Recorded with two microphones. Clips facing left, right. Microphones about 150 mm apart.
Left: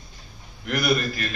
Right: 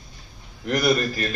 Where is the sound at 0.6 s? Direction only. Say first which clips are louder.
Right 3 dB; 35° right (ahead or behind).